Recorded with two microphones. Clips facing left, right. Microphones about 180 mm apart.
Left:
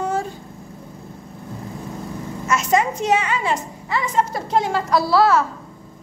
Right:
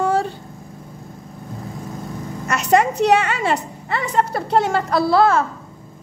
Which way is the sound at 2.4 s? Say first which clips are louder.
Right 2 dB; 65° right (ahead or behind).